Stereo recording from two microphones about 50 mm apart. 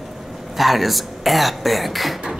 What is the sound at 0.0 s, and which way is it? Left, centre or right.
Throat clearing, centre.